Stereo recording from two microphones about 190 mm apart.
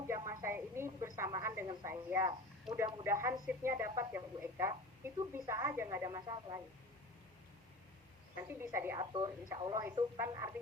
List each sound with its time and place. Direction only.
0.1 s radio: 15° right (ahead or behind)
1.6 s a woman's voice: 15° right (ahead or behind)
8.4 s a woman's voice: 10° right (ahead or behind)
9.0 s a woman's voice: 25° right (ahead or behind)